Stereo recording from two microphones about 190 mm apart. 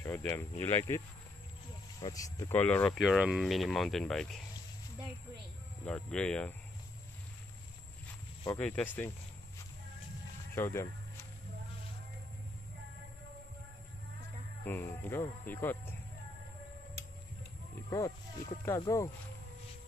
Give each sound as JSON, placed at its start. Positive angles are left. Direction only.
{"t": 0.0, "sound": "speech", "side_deg": 10}
{"t": 5.9, "sound": "speech", "side_deg": 5}
{"t": 8.5, "sound": "speech", "side_deg": 5}
{"t": 10.5, "sound": "speech", "side_deg": 15}
{"t": 14.6, "sound": "speech", "side_deg": 10}
{"t": 17.8, "sound": "speech", "side_deg": 15}